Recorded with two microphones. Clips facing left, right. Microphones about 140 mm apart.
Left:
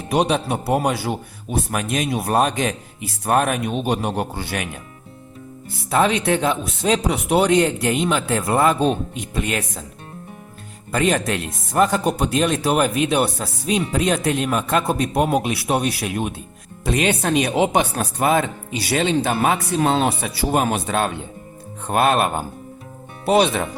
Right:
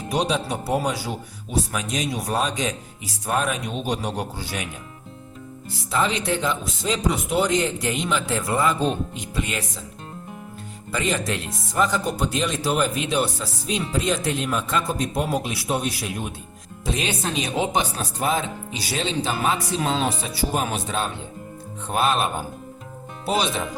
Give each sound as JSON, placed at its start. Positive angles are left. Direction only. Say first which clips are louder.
{"t": 0.1, "sound": "speech", "louder": "left 5 dB", "side_deg": 60}
{"t": 5.7, "sound": "speech", "louder": "left 5 dB", "side_deg": 60}
{"t": 10.9, "sound": "speech", "louder": "left 5 dB", "side_deg": 60}